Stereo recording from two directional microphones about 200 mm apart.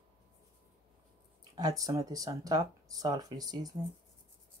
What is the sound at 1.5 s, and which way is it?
Speech, 20° right (ahead or behind).